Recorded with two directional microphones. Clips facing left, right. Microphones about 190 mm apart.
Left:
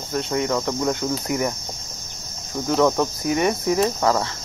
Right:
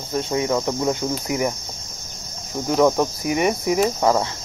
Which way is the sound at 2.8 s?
10° right (ahead or behind).